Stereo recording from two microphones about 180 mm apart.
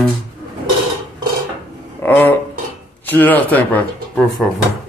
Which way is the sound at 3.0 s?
10° left (ahead or behind).